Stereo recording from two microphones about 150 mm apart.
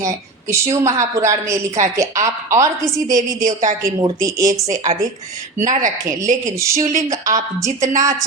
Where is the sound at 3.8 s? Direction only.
20° right (ahead or behind).